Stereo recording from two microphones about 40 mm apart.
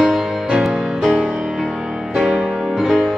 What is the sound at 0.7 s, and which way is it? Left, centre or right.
Music, centre.